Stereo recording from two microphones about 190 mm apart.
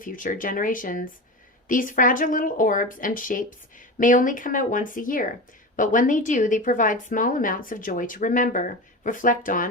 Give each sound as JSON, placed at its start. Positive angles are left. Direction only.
{"t": 0.0, "sound": "a woman's voice", "side_deg": 45}